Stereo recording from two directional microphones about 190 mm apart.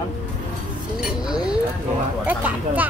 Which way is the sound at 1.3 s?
5° right (ahead or behind).